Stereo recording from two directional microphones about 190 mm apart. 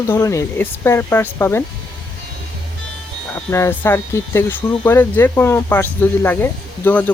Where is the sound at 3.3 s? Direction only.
10° left (ahead or behind).